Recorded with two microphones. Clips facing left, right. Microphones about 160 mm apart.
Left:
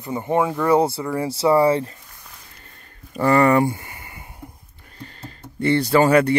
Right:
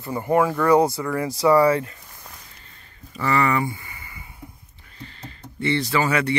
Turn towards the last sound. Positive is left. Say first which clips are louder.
# left 6 dB
turn(degrees=45)  # may be behind; listen again after turning